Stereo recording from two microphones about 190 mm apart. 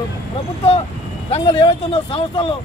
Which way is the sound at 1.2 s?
30° left (ahead or behind).